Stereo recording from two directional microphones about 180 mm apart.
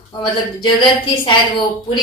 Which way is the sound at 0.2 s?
25° left (ahead or behind).